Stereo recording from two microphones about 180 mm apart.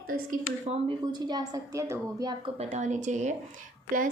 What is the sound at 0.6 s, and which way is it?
Speech, 35° right (ahead or behind).